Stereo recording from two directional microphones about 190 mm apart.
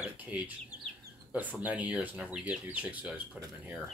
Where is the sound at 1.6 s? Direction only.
5° right (ahead or behind).